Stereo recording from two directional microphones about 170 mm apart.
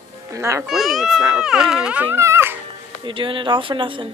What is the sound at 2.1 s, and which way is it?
Dog, 15° right (ahead or behind).